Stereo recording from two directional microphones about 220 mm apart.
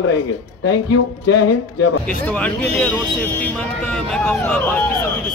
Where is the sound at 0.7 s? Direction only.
90° left.